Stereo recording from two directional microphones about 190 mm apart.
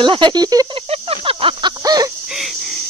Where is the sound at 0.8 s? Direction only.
30° right (ahead or behind).